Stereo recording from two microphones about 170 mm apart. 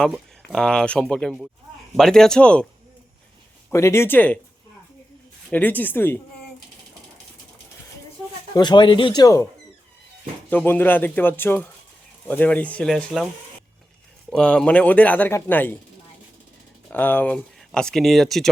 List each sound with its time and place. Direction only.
0.0 s speech: 5° left (ahead or behind)
3.7 s speech: 15° left (ahead or behind)
5.5 s speech: 10° left (ahead or behind)
8.5 s speech: 25° left (ahead or behind)
10.5 s speech: 10° left (ahead or behind)
14.3 s speech: 5° left (ahead or behind)
16.9 s speech: 10° left (ahead or behind)